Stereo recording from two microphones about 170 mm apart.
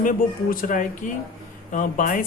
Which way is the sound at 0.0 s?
55° left (ahead or behind).